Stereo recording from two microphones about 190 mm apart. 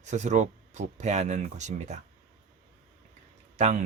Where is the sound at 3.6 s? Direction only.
40° right (ahead or behind).